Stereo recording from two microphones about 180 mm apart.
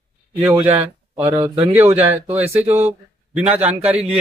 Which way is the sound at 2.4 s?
35° right (ahead or behind).